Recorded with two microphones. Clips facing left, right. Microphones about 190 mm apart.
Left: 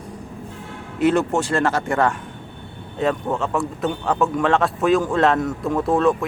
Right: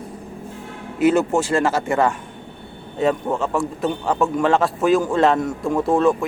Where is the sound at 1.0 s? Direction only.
5° right (ahead or behind).